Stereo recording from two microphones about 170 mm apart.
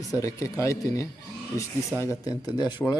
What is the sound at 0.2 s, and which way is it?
Speech, 20° left (ahead or behind).